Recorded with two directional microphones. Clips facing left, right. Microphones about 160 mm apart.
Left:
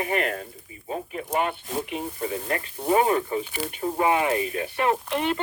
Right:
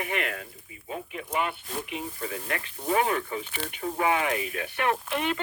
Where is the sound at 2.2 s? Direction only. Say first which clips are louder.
Left 7 dB; 30° left (ahead or behind).